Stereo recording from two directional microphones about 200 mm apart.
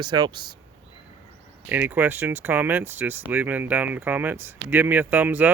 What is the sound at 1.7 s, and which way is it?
Speech, 10° right (ahead or behind).